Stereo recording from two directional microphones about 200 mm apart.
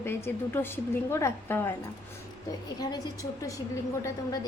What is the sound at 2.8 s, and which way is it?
Speech, 20° left (ahead or behind).